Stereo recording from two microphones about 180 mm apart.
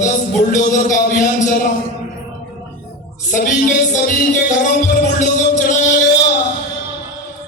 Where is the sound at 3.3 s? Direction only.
45° left (ahead or behind).